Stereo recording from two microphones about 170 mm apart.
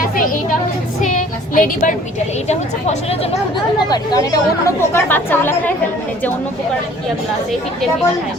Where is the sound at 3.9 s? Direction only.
20° left (ahead or behind).